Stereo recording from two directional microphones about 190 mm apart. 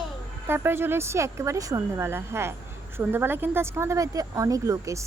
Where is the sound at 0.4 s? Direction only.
10° right (ahead or behind).